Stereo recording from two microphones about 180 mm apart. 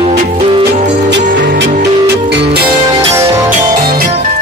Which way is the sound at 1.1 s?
75° right (ahead or behind).